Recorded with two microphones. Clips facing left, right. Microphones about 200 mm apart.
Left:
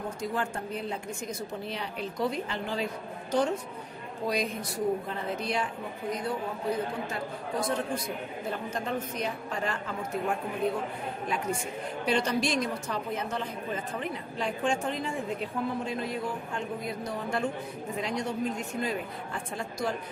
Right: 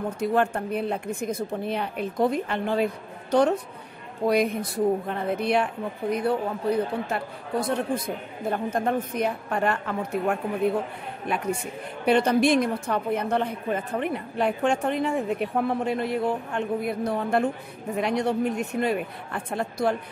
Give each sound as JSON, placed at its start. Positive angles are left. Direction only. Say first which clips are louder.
{"t": 0.2, "sound": "speech", "louder": "right 10 dB", "side_deg": -60}